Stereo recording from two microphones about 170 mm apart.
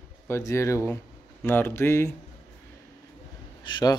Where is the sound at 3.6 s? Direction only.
25° left (ahead or behind).